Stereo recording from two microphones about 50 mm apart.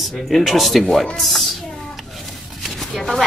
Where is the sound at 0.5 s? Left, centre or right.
Centre.